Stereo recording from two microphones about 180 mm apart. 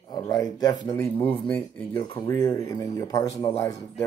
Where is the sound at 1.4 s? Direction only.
10° left (ahead or behind).